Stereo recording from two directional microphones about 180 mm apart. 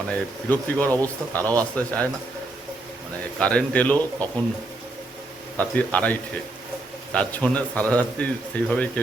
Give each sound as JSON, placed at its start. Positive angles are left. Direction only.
{"t": 0.1, "sound": "speech", "side_deg": 10}
{"t": 3.3, "sound": "speech", "side_deg": 5}
{"t": 5.5, "sound": "speech", "side_deg": 10}